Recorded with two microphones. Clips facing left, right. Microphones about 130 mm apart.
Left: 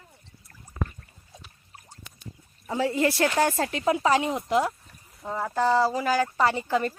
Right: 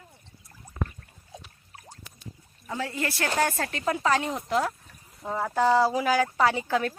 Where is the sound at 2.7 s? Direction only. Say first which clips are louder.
Left 7 dB; 25° left (ahead or behind).